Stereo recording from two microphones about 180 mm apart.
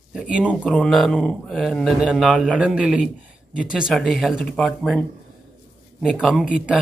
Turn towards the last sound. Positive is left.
turn(degrees=-5)  # may be behind; listen again after turning